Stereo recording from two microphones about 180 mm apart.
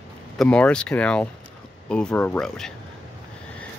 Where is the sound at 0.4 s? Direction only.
5° left (ahead or behind).